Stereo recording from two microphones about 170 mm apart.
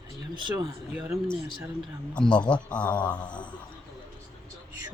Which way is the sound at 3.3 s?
25° left (ahead or behind).